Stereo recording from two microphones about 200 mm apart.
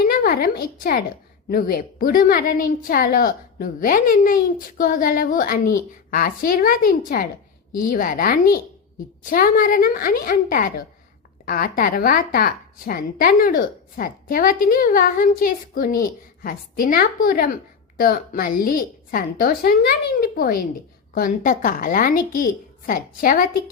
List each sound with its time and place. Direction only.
0.0 s a woman's voice: 45° left (ahead or behind)